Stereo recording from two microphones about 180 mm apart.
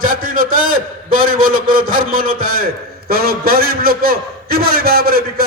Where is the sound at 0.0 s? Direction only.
50° right (ahead or behind).